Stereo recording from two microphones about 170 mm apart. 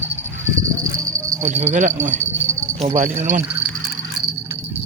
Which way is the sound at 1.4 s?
45° right (ahead or behind).